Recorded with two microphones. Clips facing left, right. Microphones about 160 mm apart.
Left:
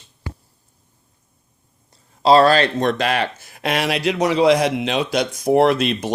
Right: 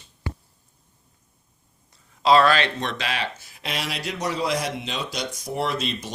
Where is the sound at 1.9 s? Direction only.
35° left (ahead or behind).